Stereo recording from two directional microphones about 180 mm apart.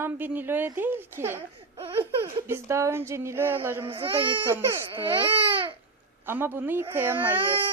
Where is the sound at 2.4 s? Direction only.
15° right (ahead or behind).